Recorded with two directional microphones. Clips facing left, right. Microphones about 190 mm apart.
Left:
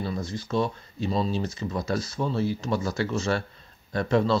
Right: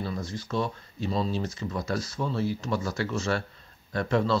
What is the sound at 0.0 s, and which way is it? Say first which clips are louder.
Speech: left 2 dB; 25° left (ahead or behind).